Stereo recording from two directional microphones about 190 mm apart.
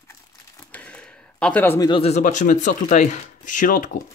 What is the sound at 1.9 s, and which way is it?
Speech, 30° left (ahead or behind).